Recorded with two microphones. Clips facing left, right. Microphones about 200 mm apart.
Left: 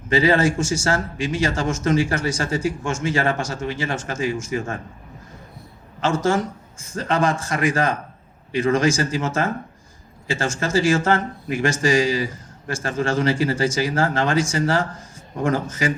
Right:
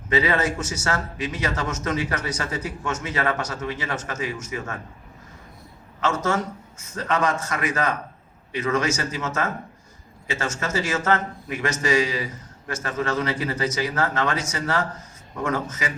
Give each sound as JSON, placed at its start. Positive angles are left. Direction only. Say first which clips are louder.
{"t": 0.1, "sound": "speech", "louder": "left 5 dB", "side_deg": 30}
{"t": 6.0, "sound": "a man's voice", "louder": "left 4 dB", "side_deg": 30}